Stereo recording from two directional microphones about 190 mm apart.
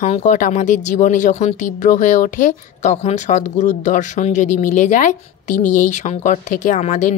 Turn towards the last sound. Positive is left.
turn(degrees=40)  # may be behind; listen again after turning